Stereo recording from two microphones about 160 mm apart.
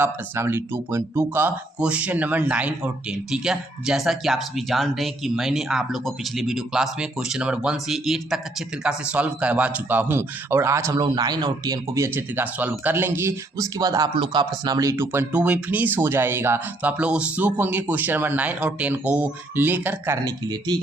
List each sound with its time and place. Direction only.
0.0 s speech: 15° right (ahead or behind)
20.2 s speech: 25° right (ahead or behind)